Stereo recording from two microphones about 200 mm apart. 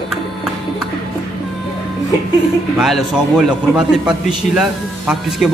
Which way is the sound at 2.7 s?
Centre (ahead or behind).